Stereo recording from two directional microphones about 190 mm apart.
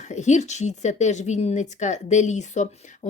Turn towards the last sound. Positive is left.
turn(degrees=40)  # may be behind; listen again after turning